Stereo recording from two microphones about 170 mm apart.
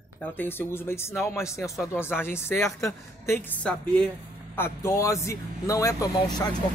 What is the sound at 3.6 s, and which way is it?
Speech, 5° left (ahead or behind).